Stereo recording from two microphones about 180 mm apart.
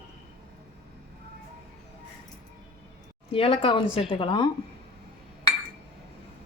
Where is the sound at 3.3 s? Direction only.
30° left (ahead or behind).